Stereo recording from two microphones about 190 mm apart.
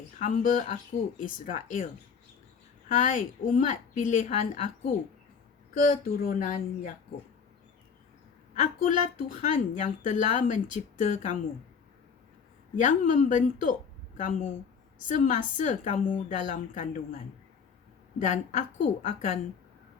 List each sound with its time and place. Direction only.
0.2 s speech: 45° left (ahead or behind)
2.9 s a woman's voice: 40° left (ahead or behind)
8.5 s a woman's voice: 35° left (ahead or behind)
12.7 s a woman's voice: 40° left (ahead or behind)
18.2 s a woman's voice: 40° left (ahead or behind)